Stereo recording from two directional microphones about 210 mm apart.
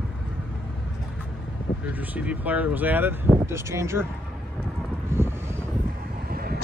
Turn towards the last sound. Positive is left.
turn(degrees=-45)  # may be behind; listen again after turning